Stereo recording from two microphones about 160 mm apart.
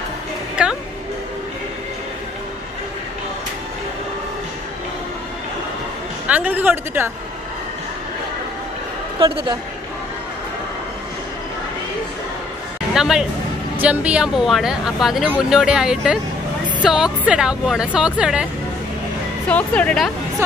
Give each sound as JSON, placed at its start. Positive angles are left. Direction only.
{"t": 0.6, "sound": "music", "side_deg": -5}
{"t": 6.2, "sound": "speech", "side_deg": -10}
{"t": 9.2, "sound": "a woman's voice", "side_deg": -25}
{"t": 12.9, "sound": "speech", "side_deg": -5}
{"t": 19.4, "sound": "speech", "side_deg": 5}